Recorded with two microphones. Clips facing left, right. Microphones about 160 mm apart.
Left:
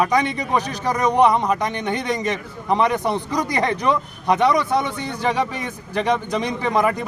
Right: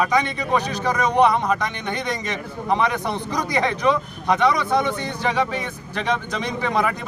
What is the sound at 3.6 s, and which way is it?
Speech, 40° left (ahead or behind).